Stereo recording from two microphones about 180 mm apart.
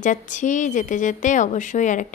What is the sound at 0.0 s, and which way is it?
Speech, 45° left (ahead or behind).